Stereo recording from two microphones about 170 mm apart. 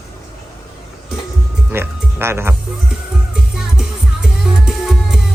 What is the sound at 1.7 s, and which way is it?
Speech, 15° right (ahead or behind).